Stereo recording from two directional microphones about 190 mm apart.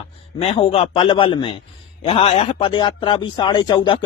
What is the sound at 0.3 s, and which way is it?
Speech, 30° left (ahead or behind).